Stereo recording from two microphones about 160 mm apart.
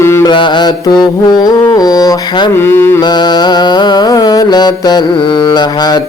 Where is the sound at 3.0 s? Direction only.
25° left (ahead or behind).